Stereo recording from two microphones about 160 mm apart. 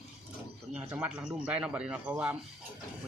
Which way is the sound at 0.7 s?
5° right (ahead or behind).